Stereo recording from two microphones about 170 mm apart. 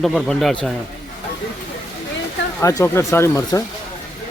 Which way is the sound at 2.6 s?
15° left (ahead or behind).